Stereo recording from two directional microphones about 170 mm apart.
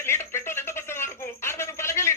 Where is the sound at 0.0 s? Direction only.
15° left (ahead or behind).